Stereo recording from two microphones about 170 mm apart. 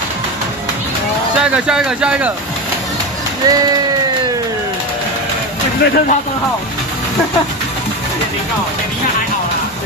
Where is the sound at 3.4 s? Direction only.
20° right (ahead or behind).